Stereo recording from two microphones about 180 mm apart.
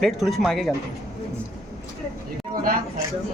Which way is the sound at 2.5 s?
55° right (ahead or behind).